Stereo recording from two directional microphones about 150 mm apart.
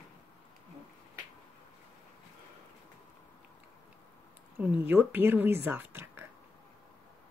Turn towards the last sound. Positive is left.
turn(degrees=-15)  # may be behind; listen again after turning